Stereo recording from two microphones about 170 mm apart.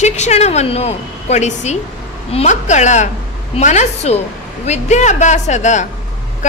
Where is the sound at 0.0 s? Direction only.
40° left (ahead or behind).